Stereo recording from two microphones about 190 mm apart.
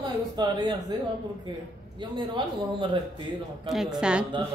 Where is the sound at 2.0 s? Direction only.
25° right (ahead or behind).